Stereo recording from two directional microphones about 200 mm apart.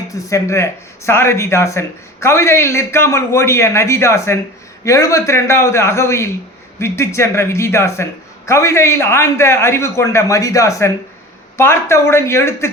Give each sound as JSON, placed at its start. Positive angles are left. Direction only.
{"t": 0.1, "sound": "a man's voice", "side_deg": 15}